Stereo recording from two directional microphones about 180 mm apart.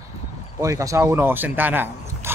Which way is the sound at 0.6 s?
15° right (ahead or behind).